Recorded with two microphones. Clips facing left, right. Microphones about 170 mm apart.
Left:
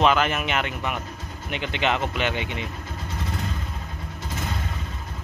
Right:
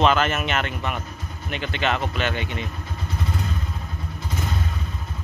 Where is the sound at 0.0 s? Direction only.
10° left (ahead or behind).